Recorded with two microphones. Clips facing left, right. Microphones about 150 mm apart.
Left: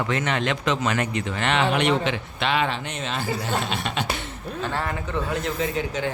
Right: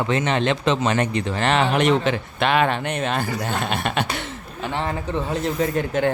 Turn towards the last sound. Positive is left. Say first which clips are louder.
# right 5 dB
turn(degrees=-55)  # may be behind; listen again after turning